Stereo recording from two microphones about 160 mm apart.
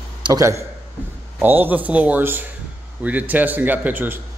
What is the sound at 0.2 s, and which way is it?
A man's voice, 20° right (ahead or behind).